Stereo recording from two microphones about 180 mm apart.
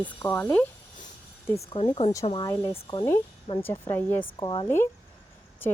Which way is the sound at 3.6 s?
10° left (ahead or behind).